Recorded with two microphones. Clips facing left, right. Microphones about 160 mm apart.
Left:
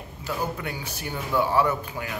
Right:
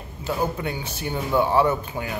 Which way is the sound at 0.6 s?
25° right (ahead or behind).